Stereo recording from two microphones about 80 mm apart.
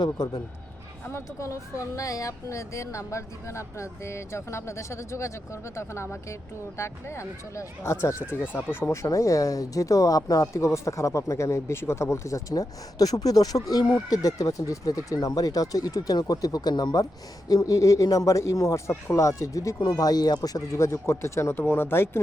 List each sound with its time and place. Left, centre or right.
1.0 s speech: left
17.5 s speech: left